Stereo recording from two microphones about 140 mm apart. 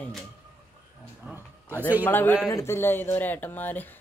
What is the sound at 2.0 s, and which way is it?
Speech, 15° left (ahead or behind).